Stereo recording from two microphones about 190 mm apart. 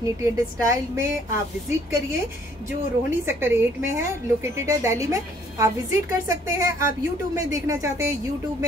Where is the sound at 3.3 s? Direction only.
10° right (ahead or behind).